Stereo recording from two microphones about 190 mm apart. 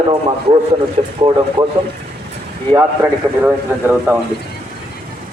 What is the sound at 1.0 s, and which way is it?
Speech, 35° right (ahead or behind).